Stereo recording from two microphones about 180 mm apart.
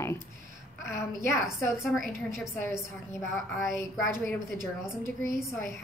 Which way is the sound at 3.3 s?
Centre (ahead or behind).